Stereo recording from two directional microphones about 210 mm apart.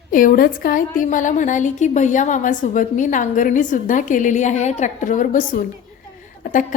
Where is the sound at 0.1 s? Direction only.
40° left (ahead or behind).